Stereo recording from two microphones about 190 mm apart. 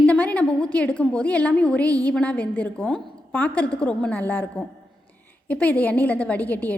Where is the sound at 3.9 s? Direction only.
10° left (ahead or behind).